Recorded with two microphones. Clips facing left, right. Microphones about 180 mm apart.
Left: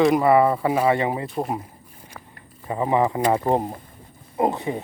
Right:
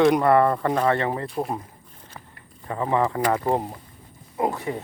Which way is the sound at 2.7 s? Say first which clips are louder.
Left 2 dB; 15° left (ahead or behind).